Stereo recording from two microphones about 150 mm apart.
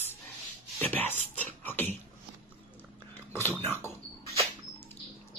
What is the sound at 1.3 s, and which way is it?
Beatboxing, 10° left (ahead or behind).